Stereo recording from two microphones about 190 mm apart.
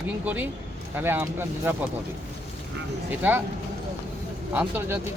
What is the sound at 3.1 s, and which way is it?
Speech, 10° right (ahead or behind).